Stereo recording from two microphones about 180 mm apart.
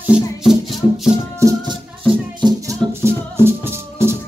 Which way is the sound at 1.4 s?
20° right (ahead or behind).